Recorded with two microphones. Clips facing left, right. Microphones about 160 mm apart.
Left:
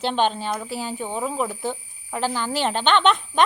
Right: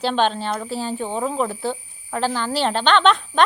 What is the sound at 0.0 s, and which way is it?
Speech, 15° left (ahead or behind).